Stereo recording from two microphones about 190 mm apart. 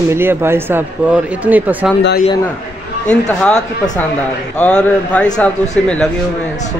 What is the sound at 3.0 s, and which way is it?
Speech, 5° left (ahead or behind).